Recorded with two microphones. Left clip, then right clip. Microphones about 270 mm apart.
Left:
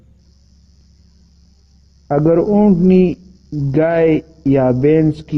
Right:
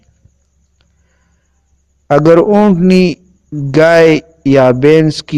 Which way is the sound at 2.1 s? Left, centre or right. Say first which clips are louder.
Right 7 dB; right.